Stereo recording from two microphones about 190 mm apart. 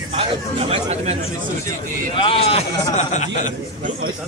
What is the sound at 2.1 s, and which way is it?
A man's voice, 30° left (ahead or behind).